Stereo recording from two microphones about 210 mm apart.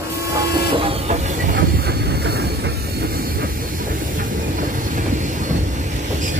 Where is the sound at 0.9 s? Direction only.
30° right (ahead or behind).